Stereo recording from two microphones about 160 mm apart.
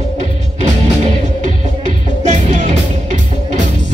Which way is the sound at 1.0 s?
45° right (ahead or behind).